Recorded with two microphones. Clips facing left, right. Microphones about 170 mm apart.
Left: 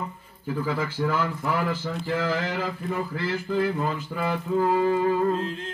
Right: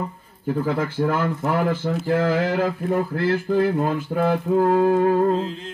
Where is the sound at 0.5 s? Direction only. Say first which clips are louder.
Right 5 dB; 50° right (ahead or behind).